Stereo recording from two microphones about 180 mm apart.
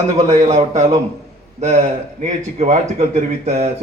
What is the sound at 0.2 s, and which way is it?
Speech, 40° right (ahead or behind).